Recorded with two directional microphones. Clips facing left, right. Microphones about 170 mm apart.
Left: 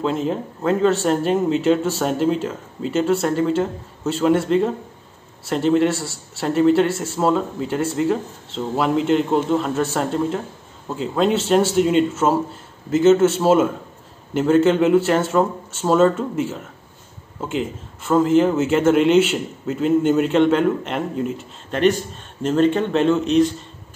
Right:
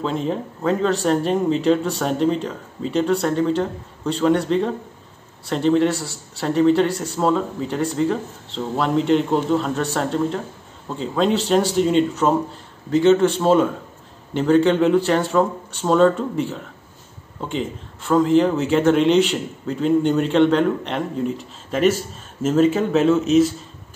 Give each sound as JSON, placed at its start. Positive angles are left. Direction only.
{"t": 0.0, "sound": "a man's voice", "side_deg": 0}